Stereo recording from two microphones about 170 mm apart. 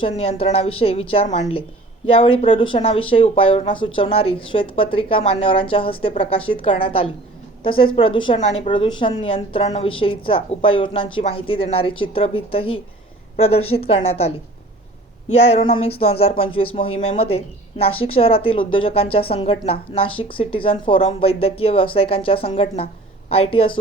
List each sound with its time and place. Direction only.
0.2 s speech: 35° left (ahead or behind)
8.4 s a woman's voice: 45° left (ahead or behind)
8.7 s speech: 30° left (ahead or behind)